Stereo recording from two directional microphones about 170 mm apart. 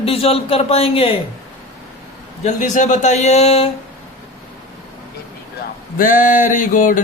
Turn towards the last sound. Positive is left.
turn(degrees=50)  # may be behind; listen again after turning